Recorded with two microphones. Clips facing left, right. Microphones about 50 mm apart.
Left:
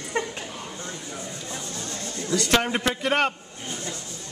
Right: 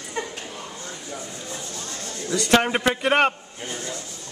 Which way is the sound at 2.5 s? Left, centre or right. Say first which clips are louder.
Right 5 dB; centre.